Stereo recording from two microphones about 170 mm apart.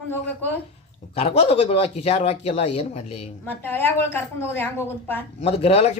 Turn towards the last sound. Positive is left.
turn(degrees=35)  # may be behind; listen again after turning